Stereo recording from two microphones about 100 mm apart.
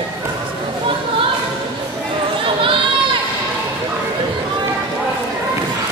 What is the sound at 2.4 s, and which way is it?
Run, 60° right (ahead or behind).